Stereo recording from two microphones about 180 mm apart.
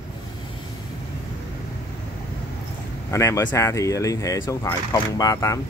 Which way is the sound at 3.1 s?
15° left (ahead or behind).